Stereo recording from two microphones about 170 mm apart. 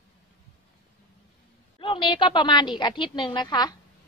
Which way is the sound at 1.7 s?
30° left (ahead or behind).